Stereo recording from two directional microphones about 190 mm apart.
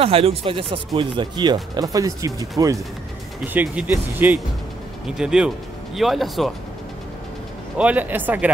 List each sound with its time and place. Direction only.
0.0 s speech: 30° right (ahead or behind)
3.5 s speech: 10° right (ahead or behind)
7.7 s speech: 5° right (ahead or behind)